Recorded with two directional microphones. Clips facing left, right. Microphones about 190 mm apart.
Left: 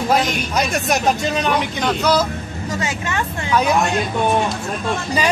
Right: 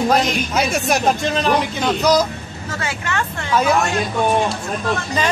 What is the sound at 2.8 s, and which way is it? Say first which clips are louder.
Speech: right 1 dB; 20° left (ahead or behind).